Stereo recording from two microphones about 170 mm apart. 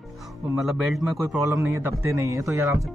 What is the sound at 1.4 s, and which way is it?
Speech, 15° right (ahead or behind).